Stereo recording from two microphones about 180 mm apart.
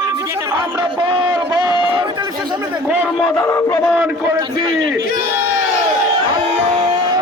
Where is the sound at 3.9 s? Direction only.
10° right (ahead or behind).